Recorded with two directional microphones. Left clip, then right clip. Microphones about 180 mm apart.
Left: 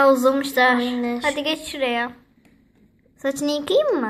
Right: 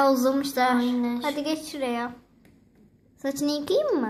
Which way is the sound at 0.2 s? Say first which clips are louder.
Left 6 dB; 5° right (ahead or behind).